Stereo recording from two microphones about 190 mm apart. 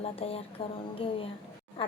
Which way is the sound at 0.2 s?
30° left (ahead or behind).